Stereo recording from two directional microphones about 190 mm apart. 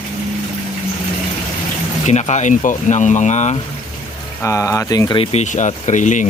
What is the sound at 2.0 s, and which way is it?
Speech, 35° left (ahead or behind).